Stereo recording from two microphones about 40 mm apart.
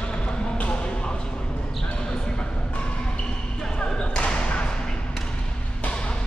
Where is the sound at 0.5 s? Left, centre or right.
Left.